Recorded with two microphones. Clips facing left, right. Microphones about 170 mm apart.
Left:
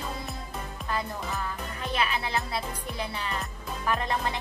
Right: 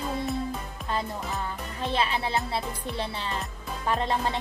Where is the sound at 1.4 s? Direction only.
30° right (ahead or behind).